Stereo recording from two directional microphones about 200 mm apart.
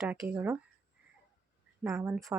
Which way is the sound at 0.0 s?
5° right (ahead or behind).